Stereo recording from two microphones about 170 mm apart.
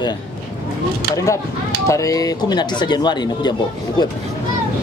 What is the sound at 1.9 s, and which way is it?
Speech, 20° left (ahead or behind).